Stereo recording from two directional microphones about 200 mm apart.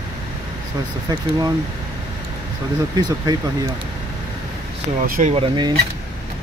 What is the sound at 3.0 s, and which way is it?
Speech, 15° right (ahead or behind).